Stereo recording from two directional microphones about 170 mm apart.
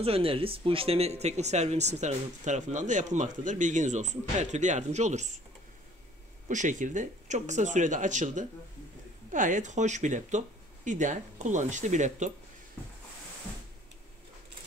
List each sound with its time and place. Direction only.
0.0 s speech: 35° right (ahead or behind)
6.5 s speech: 45° right (ahead or behind)